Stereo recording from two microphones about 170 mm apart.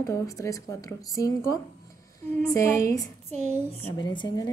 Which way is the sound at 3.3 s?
40° right (ahead or behind).